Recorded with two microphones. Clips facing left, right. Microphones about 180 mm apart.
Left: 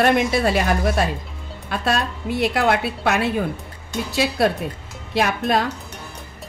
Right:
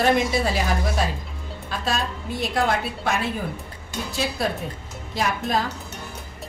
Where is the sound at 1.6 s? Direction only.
65° left (ahead or behind).